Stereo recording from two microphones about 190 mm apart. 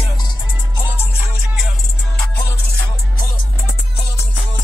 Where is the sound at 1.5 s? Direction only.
Centre (ahead or behind).